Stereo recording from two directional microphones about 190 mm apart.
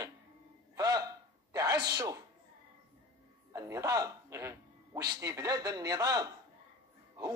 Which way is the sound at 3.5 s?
15° right (ahead or behind).